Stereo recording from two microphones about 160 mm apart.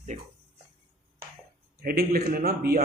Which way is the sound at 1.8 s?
75° right (ahead or behind).